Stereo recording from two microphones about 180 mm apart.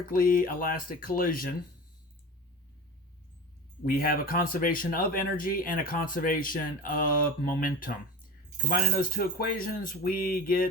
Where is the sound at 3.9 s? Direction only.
55° left (ahead or behind).